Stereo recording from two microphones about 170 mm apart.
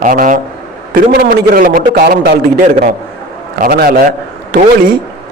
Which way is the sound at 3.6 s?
60° right (ahead or behind).